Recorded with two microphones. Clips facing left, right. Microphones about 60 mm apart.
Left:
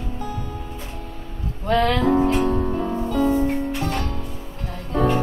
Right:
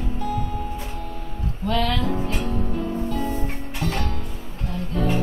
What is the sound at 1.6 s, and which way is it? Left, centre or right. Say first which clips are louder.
Music: left 5 dB; left.